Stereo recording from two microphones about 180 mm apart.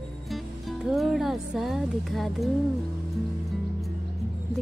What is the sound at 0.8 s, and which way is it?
Speech, centre (ahead or behind).